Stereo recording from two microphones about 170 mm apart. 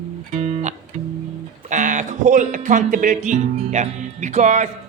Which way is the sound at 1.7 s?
50° right (ahead or behind).